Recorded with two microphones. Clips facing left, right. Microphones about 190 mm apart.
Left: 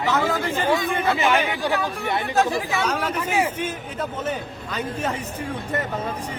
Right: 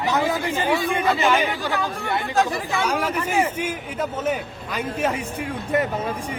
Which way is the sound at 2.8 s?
10° right (ahead or behind).